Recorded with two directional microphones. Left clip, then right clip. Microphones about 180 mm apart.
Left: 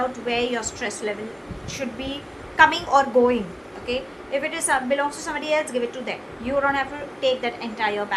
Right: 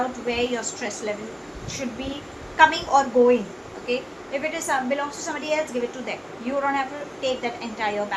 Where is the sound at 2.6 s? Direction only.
45° left (ahead or behind).